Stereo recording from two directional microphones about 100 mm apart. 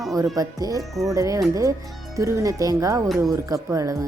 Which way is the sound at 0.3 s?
40° right (ahead or behind).